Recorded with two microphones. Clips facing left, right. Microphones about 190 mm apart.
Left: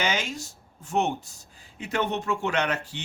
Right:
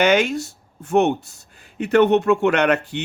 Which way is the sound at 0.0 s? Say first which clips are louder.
Right 12 dB; 65° right (ahead or behind).